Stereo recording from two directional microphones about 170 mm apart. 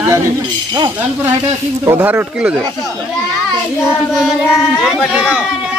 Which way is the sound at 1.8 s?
10° right (ahead or behind).